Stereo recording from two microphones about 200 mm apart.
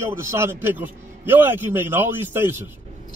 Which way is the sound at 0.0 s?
15° right (ahead or behind).